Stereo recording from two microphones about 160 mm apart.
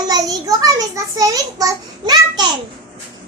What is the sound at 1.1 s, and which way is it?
Speech, 20° right (ahead or behind).